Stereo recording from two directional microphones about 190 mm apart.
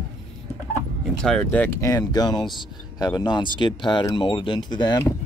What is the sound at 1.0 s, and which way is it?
Speech, 5° left (ahead or behind).